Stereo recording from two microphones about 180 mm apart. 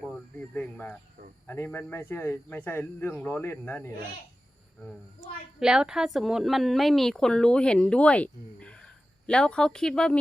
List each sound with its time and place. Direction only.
0.5 s speech: 10° left (ahead or behind)
5.5 s a woman's voice: 5° right (ahead or behind)